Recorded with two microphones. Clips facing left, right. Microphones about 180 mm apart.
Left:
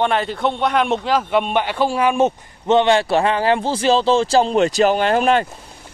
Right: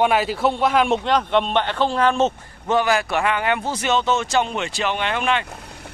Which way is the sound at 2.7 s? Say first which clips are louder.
Left 5 dB; 25° left (ahead or behind).